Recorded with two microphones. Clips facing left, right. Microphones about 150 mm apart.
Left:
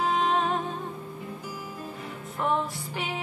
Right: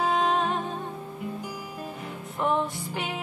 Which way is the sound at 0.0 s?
Centre (ahead or behind).